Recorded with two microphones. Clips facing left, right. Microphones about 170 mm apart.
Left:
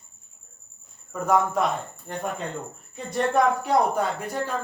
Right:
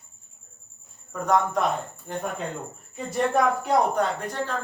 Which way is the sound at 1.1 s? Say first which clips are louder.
Left 1 dB; 5° left (ahead or behind).